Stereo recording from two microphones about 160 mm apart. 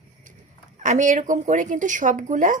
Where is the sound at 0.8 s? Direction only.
50° right (ahead or behind).